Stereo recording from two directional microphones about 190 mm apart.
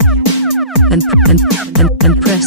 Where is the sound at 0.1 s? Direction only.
Centre (ahead or behind).